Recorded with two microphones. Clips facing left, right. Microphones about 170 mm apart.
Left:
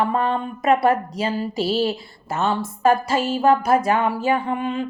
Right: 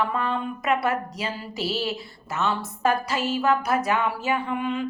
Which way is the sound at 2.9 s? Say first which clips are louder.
Left 6 dB; 50° left (ahead or behind).